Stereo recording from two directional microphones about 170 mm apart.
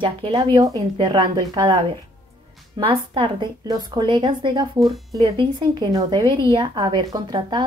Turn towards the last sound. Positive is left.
turn(degrees=-25)  # may be behind; listen again after turning